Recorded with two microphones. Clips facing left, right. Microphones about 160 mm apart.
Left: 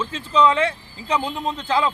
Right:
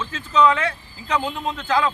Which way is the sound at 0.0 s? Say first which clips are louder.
Even; 30° left (ahead or behind).